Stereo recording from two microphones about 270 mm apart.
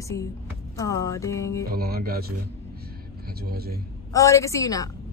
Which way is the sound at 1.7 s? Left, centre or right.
Right.